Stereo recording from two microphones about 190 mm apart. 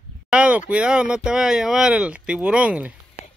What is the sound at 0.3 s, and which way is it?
Speech, 5° right (ahead or behind).